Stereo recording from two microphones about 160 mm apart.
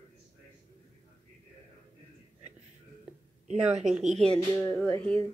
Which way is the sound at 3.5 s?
45° right (ahead or behind).